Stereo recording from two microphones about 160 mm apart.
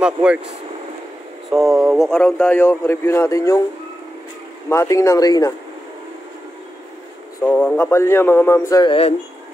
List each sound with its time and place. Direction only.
0.0 s speech: 5° right (ahead or behind)
1.5 s a man's voice: 5° right (ahead or behind); by 3.6 s 20° left (ahead or behind)
4.6 s speech: 20° left (ahead or behind)
7.4 s a man's voice: 10° left (ahead or behind)
8.8 s speech: 35° left (ahead or behind)